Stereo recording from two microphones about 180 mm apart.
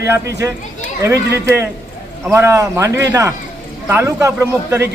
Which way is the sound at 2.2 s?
15° right (ahead or behind).